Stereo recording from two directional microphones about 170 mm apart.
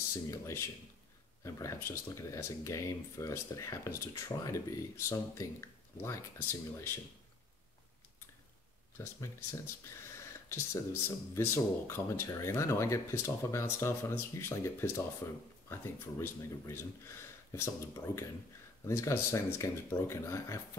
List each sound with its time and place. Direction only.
0.3 s speech: 15° left (ahead or behind)
8.9 s speech: 15° left (ahead or behind)